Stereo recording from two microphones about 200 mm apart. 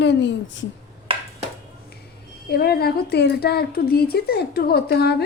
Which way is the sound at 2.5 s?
50° left (ahead or behind).